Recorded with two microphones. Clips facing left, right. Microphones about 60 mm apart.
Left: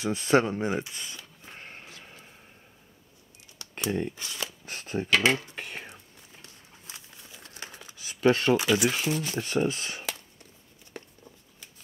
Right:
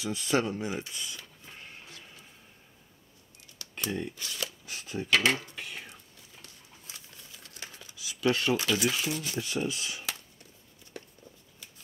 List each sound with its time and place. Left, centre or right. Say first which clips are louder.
0.0 s a sound: left 5 dB; left
4.1 s speech: left 1 dB; left
4.6 s speech: left 3 dB; left
6.9 s a sound: left 3 dB; left
8.5 s speech: left 4 dB; left
8.9 s speech: left 3 dB; left